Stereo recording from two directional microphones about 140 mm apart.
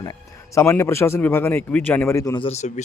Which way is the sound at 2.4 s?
50° left (ahead or behind).